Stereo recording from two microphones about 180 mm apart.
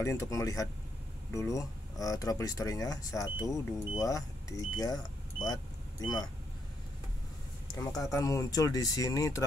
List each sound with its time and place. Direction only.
0.0 s speech: 15° left (ahead or behind)
8.0 s speech: 20° left (ahead or behind)